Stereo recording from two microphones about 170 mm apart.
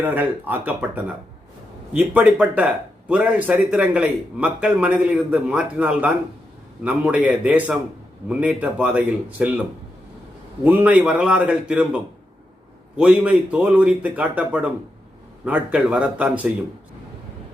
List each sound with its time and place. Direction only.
0.0 s speech: 10° right (ahead or behind)
10.6 s speech: 10° right (ahead or behind)
13.0 s speech: 5° right (ahead or behind)